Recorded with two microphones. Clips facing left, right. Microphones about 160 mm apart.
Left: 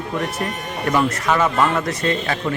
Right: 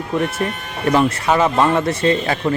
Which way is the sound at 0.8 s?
30° right (ahead or behind).